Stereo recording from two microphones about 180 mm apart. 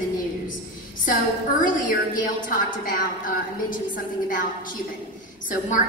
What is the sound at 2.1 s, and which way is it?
A woman's voice, 50° left (ahead or behind).